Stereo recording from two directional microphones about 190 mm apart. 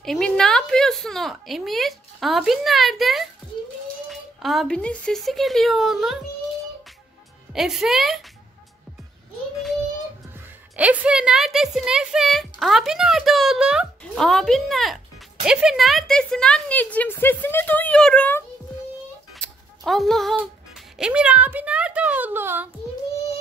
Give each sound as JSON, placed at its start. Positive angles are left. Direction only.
{"t": 0.0, "sound": "speech", "side_deg": 0}
{"t": 7.5, "sound": "speech", "side_deg": 0}
{"t": 10.8, "sound": "speech", "side_deg": -5}
{"t": 19.4, "sound": "a sound", "side_deg": 0}
{"t": 21.0, "sound": "a woman's voice", "side_deg": -5}